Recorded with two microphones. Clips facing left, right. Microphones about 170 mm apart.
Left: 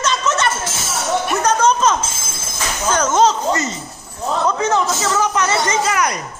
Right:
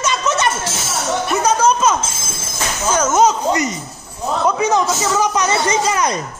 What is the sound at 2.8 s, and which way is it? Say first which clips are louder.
A man's voice: right 1 dB; 10° right (ahead or behind).